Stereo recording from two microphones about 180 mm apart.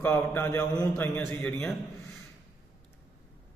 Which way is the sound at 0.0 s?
15° left (ahead or behind).